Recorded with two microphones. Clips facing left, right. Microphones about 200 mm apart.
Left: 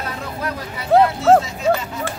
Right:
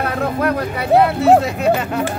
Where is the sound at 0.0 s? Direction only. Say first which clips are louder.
Right 8 dB; 60° right (ahead or behind).